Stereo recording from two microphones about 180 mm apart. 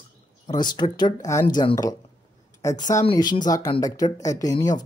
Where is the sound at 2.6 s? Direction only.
15° left (ahead or behind).